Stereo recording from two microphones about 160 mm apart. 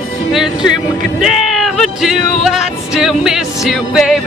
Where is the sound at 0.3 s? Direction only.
Centre (ahead or behind).